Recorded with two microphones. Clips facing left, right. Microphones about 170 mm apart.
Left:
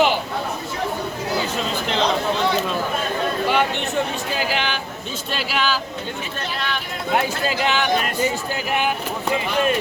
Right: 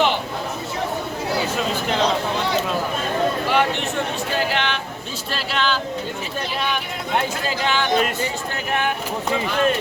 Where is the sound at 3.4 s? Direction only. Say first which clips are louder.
Even; centre (ahead or behind).